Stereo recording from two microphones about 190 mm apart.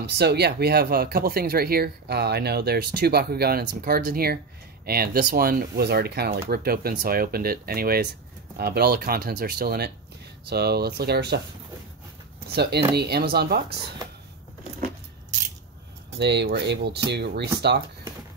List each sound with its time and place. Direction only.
0.0 s speech: 60° right (ahead or behind)
12.4 s speech: 60° right (ahead or behind)
16.2 s speech: 65° right (ahead or behind)